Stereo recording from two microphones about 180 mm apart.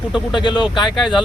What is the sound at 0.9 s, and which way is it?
Speech, centre (ahead or behind).